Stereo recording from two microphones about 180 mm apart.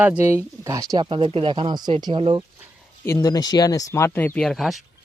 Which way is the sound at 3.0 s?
20° left (ahead or behind).